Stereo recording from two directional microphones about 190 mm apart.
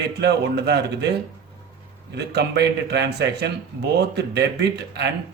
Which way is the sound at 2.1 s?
60° right (ahead or behind).